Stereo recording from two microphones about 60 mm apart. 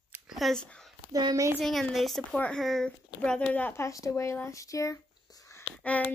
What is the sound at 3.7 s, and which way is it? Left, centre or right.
Speech, left.